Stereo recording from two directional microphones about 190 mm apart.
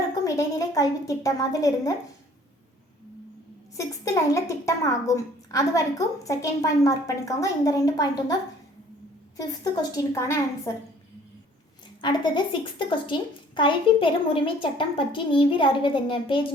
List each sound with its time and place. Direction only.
0.3 s a woman's voice: 20° left (ahead or behind)
3.8 s a woman's voice: 15° left (ahead or behind)
9.4 s a woman's voice: 20° left (ahead or behind)
12.0 s a woman's voice: 25° left (ahead or behind)